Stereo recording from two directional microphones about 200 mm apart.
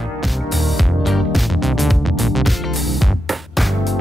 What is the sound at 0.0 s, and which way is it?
Music, centre (ahead or behind).